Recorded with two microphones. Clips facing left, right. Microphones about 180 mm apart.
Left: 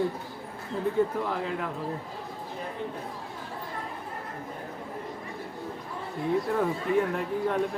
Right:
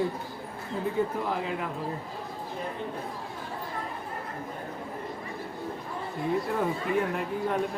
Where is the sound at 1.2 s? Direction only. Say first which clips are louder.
Even; 10° right (ahead or behind).